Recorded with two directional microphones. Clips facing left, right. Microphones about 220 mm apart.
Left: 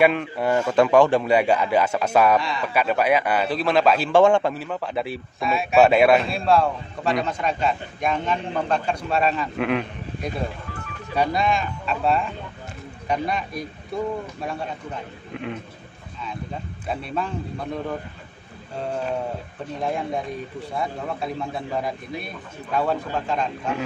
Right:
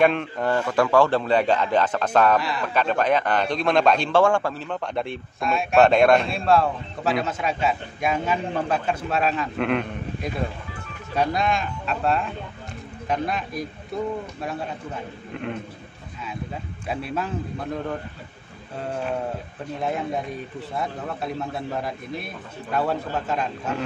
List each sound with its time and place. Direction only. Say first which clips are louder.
0.0 s a man's voice: left 1 dB; 5° left (ahead or behind)
0.6 s a man's voice: left 3 dB; 20° left (ahead or behind)
2.3 s a man's voice: left 1 dB; centre (ahead or behind)
2.7 s a man's voice: left 1 dB; 10° left (ahead or behind)
4.1 s a man's voice: left 3 dB; 20° left (ahead or behind)
4.6 s a man's voice: left 1 dB; 5° left (ahead or behind)
15.3 s a man's voice: even; centre (ahead or behind)
16.8 s a man's voice: even; 5° right (ahead or behind)
19.8 s a man's voice: even; 5° right (ahead or behind)